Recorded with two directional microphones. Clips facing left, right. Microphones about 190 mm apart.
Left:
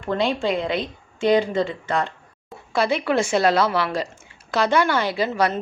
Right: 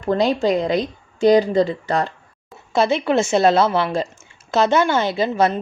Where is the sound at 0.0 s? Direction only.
40° right (ahead or behind).